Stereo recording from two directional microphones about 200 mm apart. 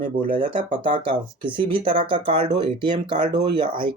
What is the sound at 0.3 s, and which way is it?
Speech, 25° right (ahead or behind).